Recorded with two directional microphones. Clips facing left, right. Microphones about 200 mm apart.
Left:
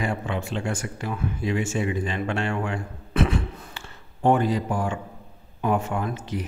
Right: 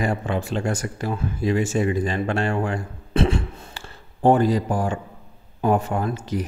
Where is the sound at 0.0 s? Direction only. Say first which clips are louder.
Right 4 dB; 40° right (ahead or behind).